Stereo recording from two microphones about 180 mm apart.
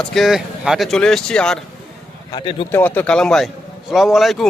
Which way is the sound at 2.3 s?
25° left (ahead or behind).